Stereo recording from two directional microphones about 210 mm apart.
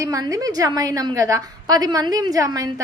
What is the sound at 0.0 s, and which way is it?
A woman's voice, 15° right (ahead or behind).